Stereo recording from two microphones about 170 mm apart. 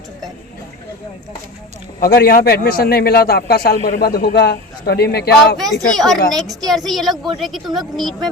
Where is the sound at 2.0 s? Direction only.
65° left (ahead or behind).